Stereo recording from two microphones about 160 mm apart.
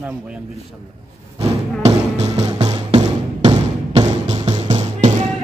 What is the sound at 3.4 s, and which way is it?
Music, 30° right (ahead or behind).